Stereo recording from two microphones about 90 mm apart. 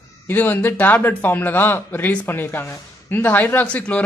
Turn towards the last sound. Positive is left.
turn(degrees=15)  # may be behind; listen again after turning